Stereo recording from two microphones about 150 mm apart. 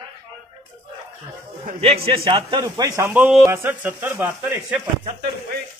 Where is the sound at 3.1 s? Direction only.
10° right (ahead or behind).